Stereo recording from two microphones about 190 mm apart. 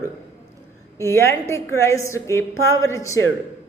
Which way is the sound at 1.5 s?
15° left (ahead or behind).